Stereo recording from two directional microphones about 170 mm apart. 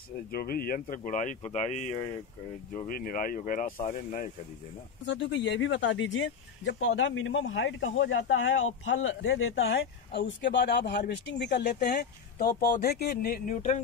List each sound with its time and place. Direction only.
0.3 s speech: 60° left (ahead or behind); by 2.0 s 45° left (ahead or behind)
2.9 s speech: 55° left (ahead or behind)
5.0 s speech: 90° left
12.0 s speech: 65° left (ahead or behind)